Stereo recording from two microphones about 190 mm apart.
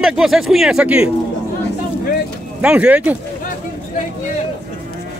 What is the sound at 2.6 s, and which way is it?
Speech, 5° right (ahead or behind).